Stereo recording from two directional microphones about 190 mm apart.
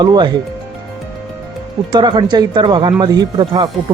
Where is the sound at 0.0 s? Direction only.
20° right (ahead or behind).